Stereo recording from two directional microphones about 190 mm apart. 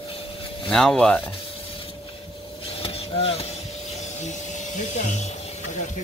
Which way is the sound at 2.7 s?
30° left (ahead or behind).